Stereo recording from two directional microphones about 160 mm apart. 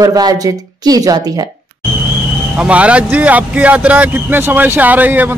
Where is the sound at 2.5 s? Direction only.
10° right (ahead or behind).